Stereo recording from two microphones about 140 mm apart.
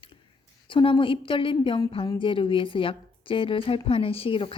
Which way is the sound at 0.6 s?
35° left (ahead or behind).